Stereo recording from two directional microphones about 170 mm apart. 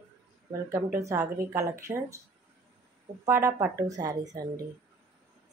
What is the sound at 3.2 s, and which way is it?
A woman's voice, 15° right (ahead or behind).